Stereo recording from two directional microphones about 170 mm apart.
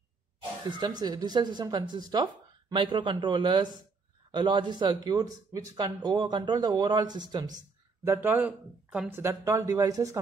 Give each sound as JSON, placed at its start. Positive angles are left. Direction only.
{"t": 0.7, "sound": "speech", "side_deg": -25}
{"t": 8.0, "sound": "speech", "side_deg": -15}